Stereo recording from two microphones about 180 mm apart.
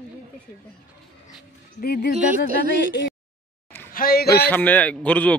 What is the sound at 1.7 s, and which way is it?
Speech, 60° left (ahead or behind).